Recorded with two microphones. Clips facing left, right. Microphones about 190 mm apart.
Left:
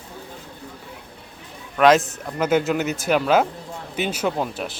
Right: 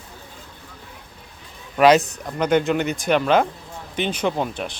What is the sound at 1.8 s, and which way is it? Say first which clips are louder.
Speech: right 1 dB; centre (ahead or behind).